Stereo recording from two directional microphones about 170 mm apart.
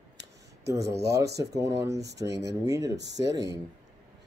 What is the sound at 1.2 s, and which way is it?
Speech, 75° right (ahead or behind).